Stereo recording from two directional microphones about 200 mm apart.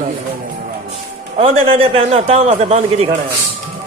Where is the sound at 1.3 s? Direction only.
30° right (ahead or behind).